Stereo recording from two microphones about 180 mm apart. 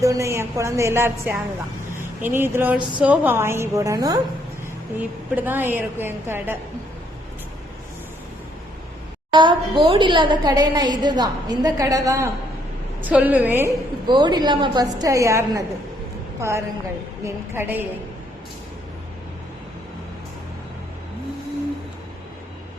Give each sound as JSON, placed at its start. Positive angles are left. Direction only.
{"t": 0.0, "sound": "a woman's voice", "side_deg": -15}
{"t": 4.9, "sound": "a woman's voice", "side_deg": -10}
{"t": 9.3, "sound": "a woman's voice", "side_deg": -25}
{"t": 14.1, "sound": "a woman's voice", "side_deg": -25}